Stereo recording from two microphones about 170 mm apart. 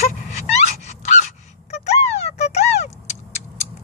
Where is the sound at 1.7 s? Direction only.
40° left (ahead or behind).